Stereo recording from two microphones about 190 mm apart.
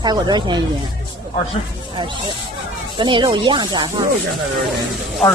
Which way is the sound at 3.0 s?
25° right (ahead or behind).